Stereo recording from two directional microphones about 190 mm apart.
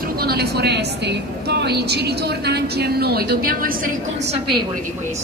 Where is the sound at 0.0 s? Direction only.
55° right (ahead or behind).